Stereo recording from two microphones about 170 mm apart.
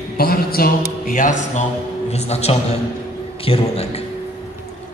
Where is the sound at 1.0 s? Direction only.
50° left (ahead or behind).